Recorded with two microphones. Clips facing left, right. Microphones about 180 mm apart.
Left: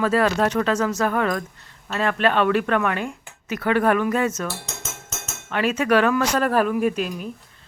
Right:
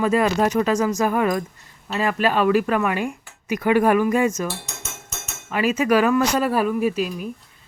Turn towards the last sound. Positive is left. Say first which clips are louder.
# right 1 dB
turn(degrees=-5)  # may be behind; listen again after turning